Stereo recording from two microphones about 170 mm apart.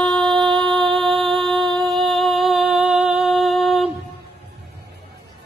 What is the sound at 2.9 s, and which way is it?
Humming, 40° right (ahead or behind).